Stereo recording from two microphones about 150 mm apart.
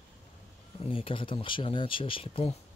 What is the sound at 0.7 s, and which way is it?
Speech, 40° left (ahead or behind).